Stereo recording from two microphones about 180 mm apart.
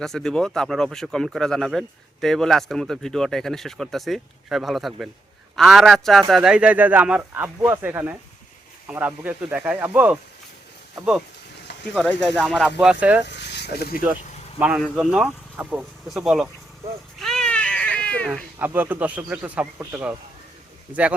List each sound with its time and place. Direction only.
0.0 s a man's voice: centre (ahead or behind)
12.3 s a man's voice: 5° left (ahead or behind)
13.2 s a sound: 70° left (ahead or behind)
14.6 s speech: 5° right (ahead or behind)
17.2 s baby cry: centre (ahead or behind)
18.6 s a man's voice: 10° right (ahead or behind)